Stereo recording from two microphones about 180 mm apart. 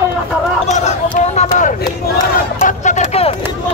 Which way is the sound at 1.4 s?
45° left (ahead or behind).